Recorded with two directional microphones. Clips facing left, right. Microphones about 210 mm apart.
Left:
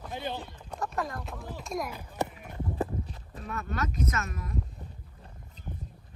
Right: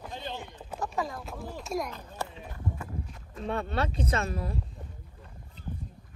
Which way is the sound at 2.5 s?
35° left (ahead or behind).